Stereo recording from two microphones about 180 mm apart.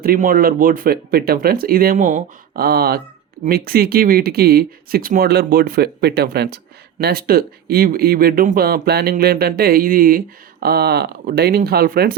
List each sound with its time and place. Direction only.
0.0 s speech: 55° right (ahead or behind)